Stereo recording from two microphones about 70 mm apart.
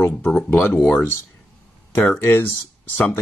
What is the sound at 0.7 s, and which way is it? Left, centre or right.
Speech, centre.